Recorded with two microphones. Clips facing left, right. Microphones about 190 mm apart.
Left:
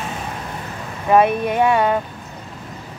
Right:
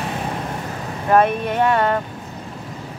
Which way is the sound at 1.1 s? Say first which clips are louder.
Left 1 dB; 10° left (ahead or behind).